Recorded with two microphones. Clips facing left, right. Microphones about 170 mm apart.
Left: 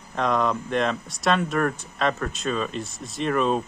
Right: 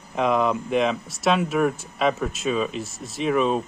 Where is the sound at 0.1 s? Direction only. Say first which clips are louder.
Right 2 dB; 5° right (ahead or behind).